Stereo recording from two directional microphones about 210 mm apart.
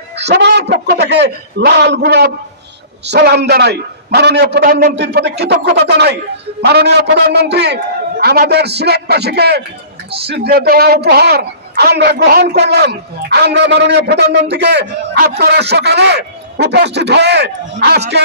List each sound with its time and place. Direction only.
0.2 s a man's voice: 55° right (ahead or behind)